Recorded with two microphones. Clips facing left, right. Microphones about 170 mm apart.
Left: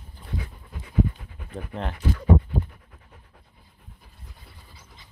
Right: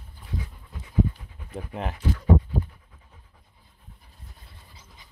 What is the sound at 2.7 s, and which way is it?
Pant, 65° left (ahead or behind).